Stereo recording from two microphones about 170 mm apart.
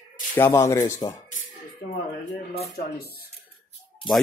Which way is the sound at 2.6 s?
65° left (ahead or behind).